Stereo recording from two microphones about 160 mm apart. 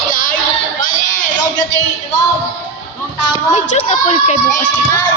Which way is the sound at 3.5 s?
40° left (ahead or behind).